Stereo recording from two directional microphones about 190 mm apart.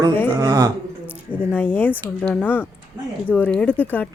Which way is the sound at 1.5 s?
10° left (ahead or behind).